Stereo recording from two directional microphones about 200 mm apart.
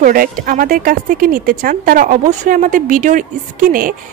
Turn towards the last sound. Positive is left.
turn(degrees=-45)  # may be behind; listen again after turning